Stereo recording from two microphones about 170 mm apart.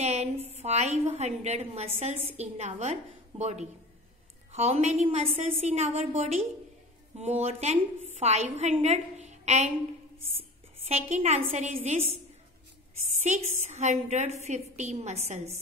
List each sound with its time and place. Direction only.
0.0 s a woman's voice: 40° right (ahead or behind)
10.9 s a woman's voice: 40° right (ahead or behind)
13.2 s a woman's voice: 45° right (ahead or behind)